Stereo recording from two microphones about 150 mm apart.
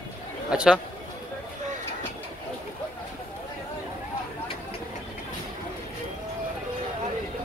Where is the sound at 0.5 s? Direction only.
5° right (ahead or behind).